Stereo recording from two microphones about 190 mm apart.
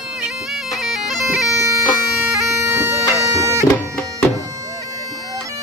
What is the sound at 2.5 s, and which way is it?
Bagpipes, 15° right (ahead or behind).